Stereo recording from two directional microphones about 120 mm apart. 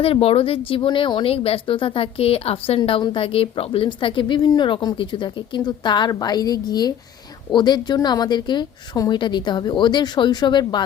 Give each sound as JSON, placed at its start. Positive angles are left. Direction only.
{"t": 0.0, "sound": "a woman's voice", "side_deg": 55}